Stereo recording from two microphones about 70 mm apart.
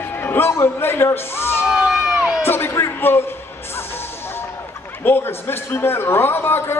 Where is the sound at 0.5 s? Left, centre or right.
Left.